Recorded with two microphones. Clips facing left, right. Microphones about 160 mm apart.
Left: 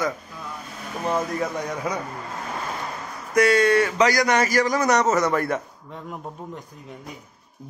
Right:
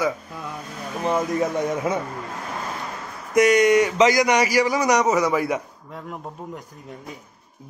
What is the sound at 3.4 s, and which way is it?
A man's voice, 20° right (ahead or behind).